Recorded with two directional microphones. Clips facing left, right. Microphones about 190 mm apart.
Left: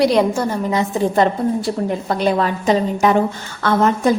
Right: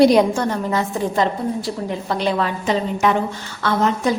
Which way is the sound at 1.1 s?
55° left (ahead or behind).